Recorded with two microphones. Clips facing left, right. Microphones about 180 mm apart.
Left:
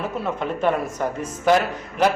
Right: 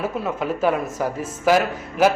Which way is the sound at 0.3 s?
5° right (ahead or behind).